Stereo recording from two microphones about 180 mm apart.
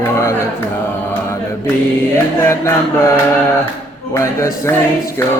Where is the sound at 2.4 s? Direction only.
15° left (ahead or behind).